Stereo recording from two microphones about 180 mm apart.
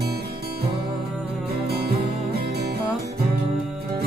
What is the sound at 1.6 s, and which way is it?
Music, 60° right (ahead or behind).